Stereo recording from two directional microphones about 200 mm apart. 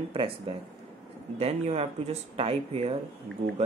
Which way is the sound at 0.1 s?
25° right (ahead or behind).